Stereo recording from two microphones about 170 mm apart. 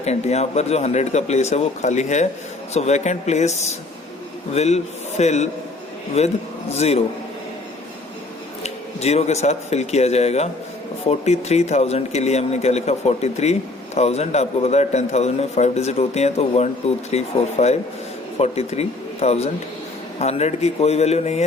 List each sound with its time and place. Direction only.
0.0 s speech: 40° left (ahead or behind)
8.6 s speech: 40° left (ahead or behind)